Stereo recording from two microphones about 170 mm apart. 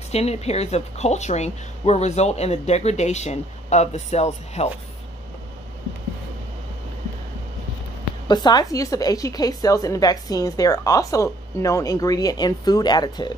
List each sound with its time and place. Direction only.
0.1 s speech: 40° left (ahead or behind)
8.3 s a woman's voice: 25° left (ahead or behind)